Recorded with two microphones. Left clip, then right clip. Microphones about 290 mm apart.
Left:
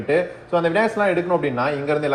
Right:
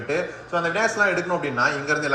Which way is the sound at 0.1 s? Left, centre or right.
Centre.